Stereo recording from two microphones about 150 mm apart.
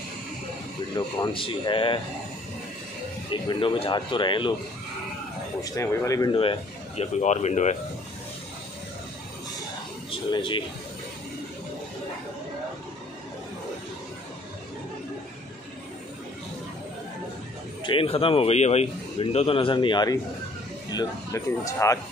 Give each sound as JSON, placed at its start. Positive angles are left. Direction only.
{"t": 0.9, "sound": "speech", "side_deg": 30}
{"t": 3.3, "sound": "speech", "side_deg": 35}
{"t": 5.6, "sound": "speech", "side_deg": 25}
{"t": 6.3, "sound": "speech", "side_deg": 35}
{"t": 10.3, "sound": "speech", "side_deg": 35}
{"t": 17.8, "sound": "speech", "side_deg": 40}